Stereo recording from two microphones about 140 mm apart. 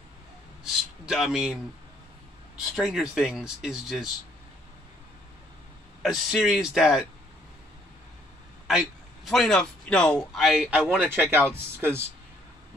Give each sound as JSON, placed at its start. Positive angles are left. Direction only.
{"t": 0.7, "sound": "a man's voice", "side_deg": -5}
{"t": 2.7, "sound": "speech", "side_deg": 0}
{"t": 6.0, "sound": "speech", "side_deg": 0}
{"t": 8.6, "sound": "a man's voice", "side_deg": 0}